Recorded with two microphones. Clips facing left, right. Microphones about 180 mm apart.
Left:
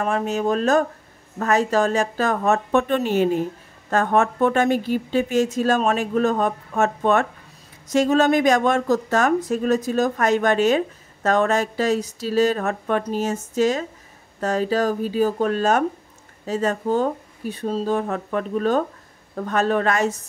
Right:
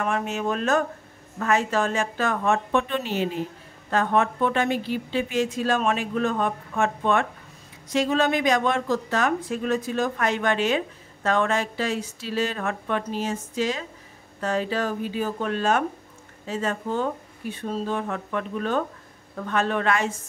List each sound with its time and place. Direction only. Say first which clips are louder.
0.0 s speech: left 4 dB; 35° left (ahead or behind)